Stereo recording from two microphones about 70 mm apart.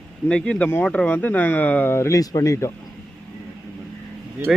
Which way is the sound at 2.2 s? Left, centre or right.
Left.